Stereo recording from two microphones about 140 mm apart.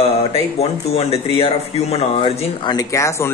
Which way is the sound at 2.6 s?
30° left (ahead or behind).